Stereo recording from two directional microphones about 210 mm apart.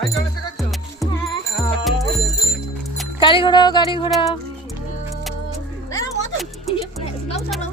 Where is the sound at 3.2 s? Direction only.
25° left (ahead or behind).